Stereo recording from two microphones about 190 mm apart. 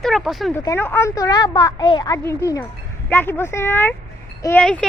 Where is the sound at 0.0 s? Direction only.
Centre (ahead or behind).